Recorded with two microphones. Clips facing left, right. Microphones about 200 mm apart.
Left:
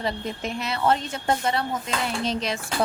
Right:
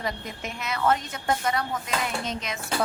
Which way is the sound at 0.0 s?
30° left (ahead or behind).